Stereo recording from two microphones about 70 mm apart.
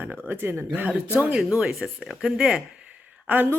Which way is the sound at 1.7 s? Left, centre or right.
Centre.